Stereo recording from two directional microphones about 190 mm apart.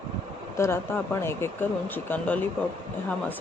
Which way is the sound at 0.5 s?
15° left (ahead or behind).